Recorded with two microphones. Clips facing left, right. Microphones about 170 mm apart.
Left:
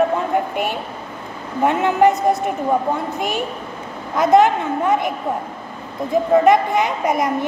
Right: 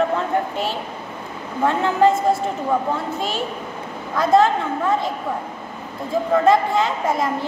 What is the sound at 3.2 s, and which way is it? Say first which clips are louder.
A woman's voice: left 2 dB; 15° left (ahead or behind).